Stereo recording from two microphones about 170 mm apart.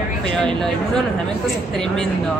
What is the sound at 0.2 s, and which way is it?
Speech, 5° left (ahead or behind).